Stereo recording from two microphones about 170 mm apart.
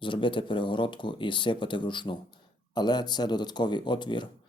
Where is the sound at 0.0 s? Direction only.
30° left (ahead or behind).